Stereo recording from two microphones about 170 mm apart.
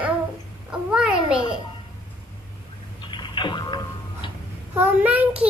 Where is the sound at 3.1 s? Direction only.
25° left (ahead or behind).